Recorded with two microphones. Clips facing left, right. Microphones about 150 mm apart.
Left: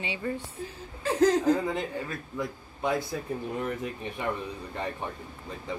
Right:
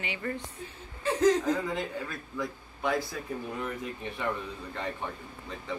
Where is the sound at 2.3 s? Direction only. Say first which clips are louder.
Even; 20° left (ahead or behind).